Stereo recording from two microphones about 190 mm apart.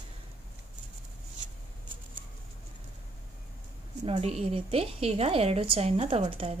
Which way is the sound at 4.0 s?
30° right (ahead or behind).